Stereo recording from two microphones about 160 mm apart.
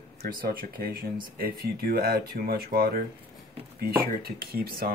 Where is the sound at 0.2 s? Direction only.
65° right (ahead or behind).